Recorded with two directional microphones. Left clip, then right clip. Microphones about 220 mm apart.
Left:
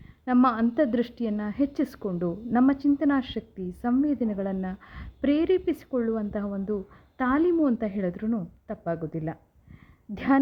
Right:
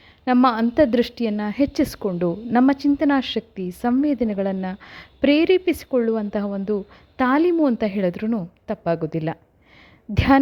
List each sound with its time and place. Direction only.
0.3 s a woman's voice: 35° right (ahead or behind)